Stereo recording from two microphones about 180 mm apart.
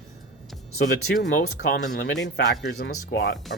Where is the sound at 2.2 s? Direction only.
70° left (ahead or behind).